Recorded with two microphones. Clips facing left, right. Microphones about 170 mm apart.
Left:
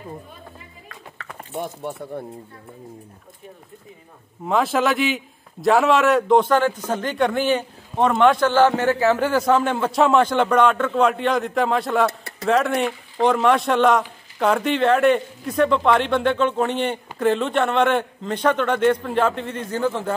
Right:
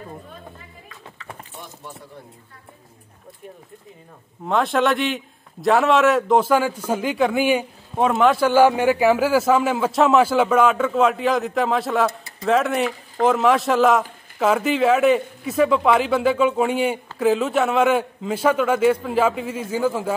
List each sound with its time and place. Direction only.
0.8 s a sound: 60° left (ahead or behind)
4.5 s a man's voice: centre (ahead or behind)
12.1 s speech: 65° left (ahead or behind)
12.4 s a man's voice: centre (ahead or behind)